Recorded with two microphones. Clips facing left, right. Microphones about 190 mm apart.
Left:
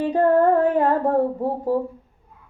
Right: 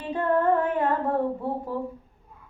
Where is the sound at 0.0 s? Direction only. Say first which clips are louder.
Left 7 dB; 40° left (ahead or behind).